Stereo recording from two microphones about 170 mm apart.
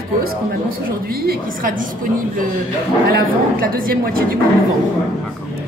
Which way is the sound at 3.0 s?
60° right (ahead or behind).